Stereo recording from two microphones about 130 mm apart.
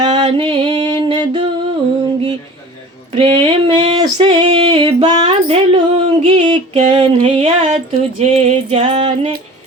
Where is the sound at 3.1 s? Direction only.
40° right (ahead or behind).